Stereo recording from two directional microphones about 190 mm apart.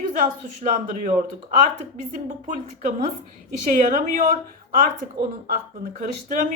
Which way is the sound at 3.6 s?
40° right (ahead or behind).